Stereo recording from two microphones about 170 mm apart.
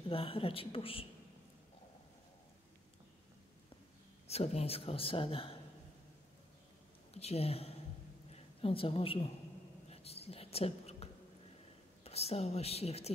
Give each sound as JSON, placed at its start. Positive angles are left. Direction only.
{"t": 0.1, "sound": "a man's voice", "side_deg": 35}
{"t": 4.3, "sound": "a man's voice", "side_deg": 35}
{"t": 7.2, "sound": "a man's voice", "side_deg": 35}
{"t": 9.8, "sound": "whispering", "side_deg": 35}
{"t": 12.0, "sound": "a man's voice", "side_deg": 35}